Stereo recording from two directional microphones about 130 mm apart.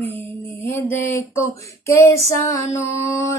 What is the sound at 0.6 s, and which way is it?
Female singing, 15° left (ahead or behind).